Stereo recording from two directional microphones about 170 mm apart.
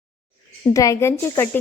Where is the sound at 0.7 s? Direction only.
20° left (ahead or behind).